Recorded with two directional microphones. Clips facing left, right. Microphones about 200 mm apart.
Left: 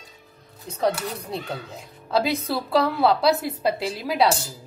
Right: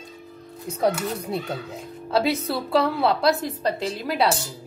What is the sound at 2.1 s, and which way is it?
A woman's voice, centre (ahead or behind).